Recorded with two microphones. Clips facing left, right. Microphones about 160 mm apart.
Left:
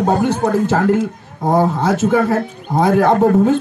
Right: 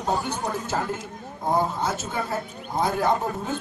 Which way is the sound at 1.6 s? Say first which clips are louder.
Left 12 dB; 90° left.